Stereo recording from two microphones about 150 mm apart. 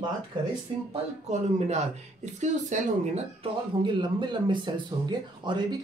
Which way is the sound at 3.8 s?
30° right (ahead or behind).